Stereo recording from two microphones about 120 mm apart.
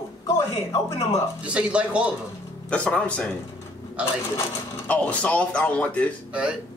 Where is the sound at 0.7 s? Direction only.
30° left (ahead or behind).